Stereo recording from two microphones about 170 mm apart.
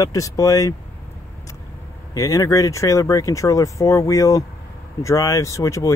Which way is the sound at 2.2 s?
20° left (ahead or behind).